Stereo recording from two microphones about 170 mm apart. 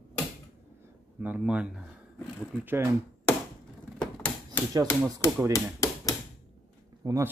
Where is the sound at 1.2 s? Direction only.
5° right (ahead or behind).